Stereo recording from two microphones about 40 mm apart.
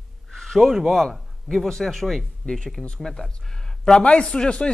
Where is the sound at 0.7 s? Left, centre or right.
Centre.